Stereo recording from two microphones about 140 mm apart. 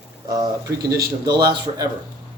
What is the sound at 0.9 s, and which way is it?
Speech, 30° right (ahead or behind).